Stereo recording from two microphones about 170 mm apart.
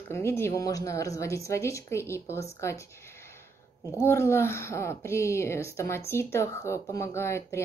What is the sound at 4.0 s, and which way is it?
A child's voice, 15° left (ahead or behind).